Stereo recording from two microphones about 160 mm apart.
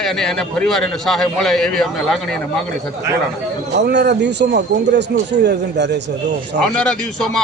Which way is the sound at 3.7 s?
90° right.